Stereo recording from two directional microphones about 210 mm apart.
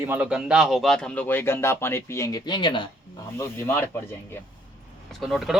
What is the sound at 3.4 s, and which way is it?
Speech, 10° left (ahead or behind).